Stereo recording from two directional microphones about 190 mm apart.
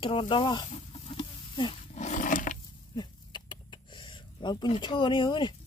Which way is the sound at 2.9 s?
25° left (ahead or behind).